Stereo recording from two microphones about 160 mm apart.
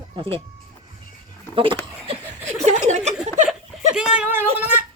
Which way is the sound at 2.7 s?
45° right (ahead or behind).